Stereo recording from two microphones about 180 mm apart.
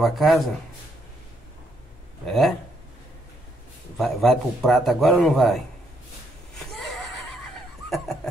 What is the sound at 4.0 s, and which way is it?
Speech, centre (ahead or behind).